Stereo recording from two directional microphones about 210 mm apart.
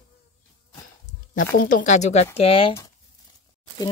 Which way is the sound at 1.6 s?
40° left (ahead or behind).